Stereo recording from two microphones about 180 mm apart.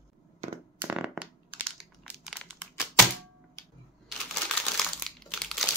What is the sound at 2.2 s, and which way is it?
Crumpling, centre (ahead or behind).